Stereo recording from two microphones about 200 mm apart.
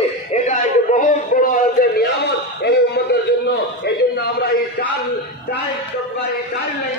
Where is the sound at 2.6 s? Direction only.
55° left (ahead or behind).